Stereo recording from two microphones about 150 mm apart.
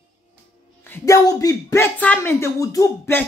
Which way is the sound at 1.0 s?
20° left (ahead or behind).